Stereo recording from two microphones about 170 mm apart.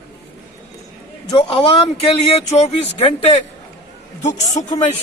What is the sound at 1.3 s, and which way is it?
Speech, 30° left (ahead or behind).